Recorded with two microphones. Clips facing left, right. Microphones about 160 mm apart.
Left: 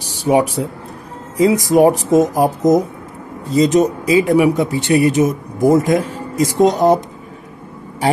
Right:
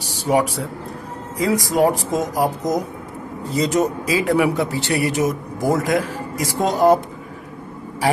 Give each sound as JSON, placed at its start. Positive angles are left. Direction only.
{"t": 0.2, "sound": "speech", "side_deg": 20}
{"t": 1.7, "sound": "speech", "side_deg": 20}